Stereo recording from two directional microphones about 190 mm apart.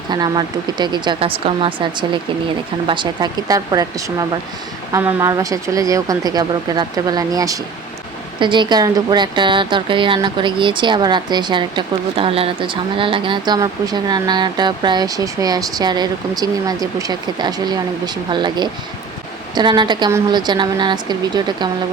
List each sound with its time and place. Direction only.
0.1 s a woman's voice: 20° right (ahead or behind)
4.9 s a woman's voice: 15° right (ahead or behind)